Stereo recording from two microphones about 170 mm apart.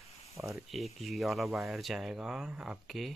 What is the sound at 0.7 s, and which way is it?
Speech, centre (ahead or behind).